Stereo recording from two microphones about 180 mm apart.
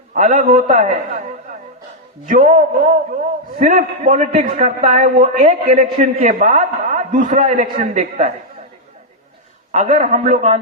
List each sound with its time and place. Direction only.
0.1 s a man's voice: 45° right (ahead or behind)
9.7 s a man's voice: 45° right (ahead or behind)